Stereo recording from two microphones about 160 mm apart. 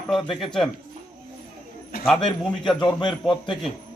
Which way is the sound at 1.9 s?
70° left (ahead or behind).